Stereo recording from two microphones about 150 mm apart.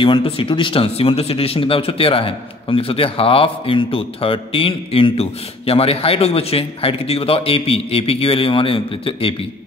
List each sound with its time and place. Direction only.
0.0 s speech: 35° left (ahead or behind)